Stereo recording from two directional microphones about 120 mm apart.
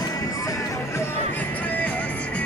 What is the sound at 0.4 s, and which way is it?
Music, 30° left (ahead or behind).